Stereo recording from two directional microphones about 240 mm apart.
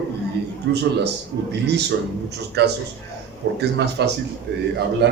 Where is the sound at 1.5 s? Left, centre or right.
Right.